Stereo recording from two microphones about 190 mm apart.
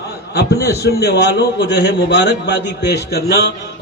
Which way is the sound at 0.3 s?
60° left (ahead or behind).